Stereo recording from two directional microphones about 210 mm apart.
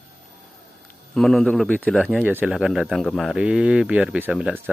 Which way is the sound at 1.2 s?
Centre (ahead or behind).